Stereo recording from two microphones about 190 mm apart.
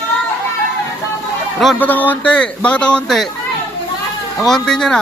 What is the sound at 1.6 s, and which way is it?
Speech, 10° left (ahead or behind).